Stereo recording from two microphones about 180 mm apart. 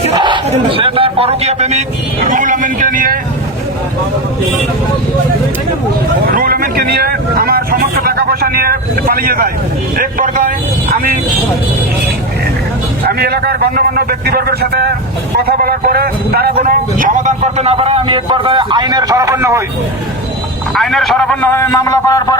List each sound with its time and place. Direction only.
0.1 s a sound: 25° right (ahead or behind)
0.5 s a man's voice: 30° right (ahead or behind); by 3.2 s 50° right (ahead or behind)
6.3 s a man's voice: 55° right (ahead or behind)
13.1 s a man's voice: 60° right (ahead or behind); by 19.6 s 15° right (ahead or behind)
20.7 s a man's voice: centre (ahead or behind); by 22.4 s 15° left (ahead or behind)